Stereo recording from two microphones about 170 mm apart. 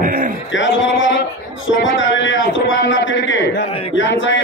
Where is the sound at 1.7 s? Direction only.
90° left.